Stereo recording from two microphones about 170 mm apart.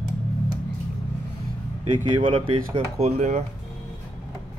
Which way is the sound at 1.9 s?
30° right (ahead or behind).